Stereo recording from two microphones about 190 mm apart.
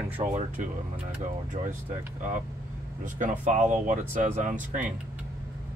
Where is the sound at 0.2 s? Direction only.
40° right (ahead or behind).